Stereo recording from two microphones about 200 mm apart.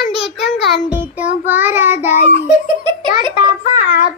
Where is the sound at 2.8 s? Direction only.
20° right (ahead or behind).